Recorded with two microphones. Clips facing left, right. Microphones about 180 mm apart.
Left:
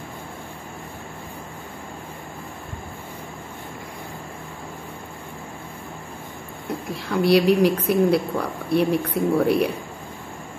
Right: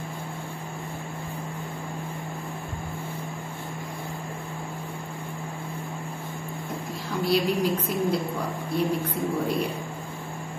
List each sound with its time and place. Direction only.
7.1 s a woman's voice: 70° left (ahead or behind)